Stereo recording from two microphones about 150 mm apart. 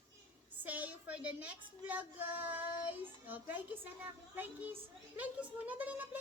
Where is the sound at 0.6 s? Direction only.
10° right (ahead or behind).